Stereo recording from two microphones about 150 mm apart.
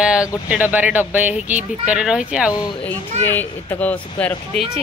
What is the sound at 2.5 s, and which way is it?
Speech, 30° left (ahead or behind).